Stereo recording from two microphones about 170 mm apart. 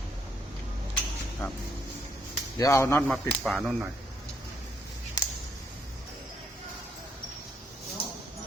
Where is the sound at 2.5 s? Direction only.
20° left (ahead or behind).